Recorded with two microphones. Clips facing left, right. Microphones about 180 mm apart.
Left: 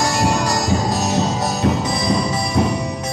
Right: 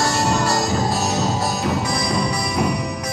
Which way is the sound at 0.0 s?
15° left (ahead or behind).